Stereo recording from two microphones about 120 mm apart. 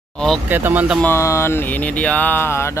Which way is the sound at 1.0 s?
25° left (ahead or behind).